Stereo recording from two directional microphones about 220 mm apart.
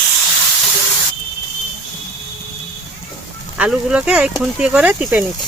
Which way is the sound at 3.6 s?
5° right (ahead or behind).